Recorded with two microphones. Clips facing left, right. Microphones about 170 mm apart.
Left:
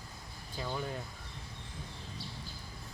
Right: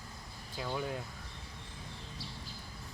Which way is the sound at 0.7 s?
5° right (ahead or behind).